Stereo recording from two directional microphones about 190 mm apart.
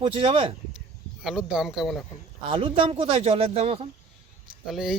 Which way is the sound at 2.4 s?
30° right (ahead or behind).